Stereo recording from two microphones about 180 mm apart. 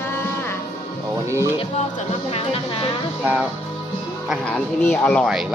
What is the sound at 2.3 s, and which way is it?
Speech, 35° left (ahead or behind).